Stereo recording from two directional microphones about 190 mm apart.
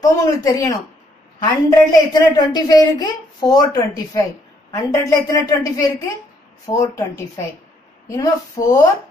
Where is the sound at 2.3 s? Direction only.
20° left (ahead or behind).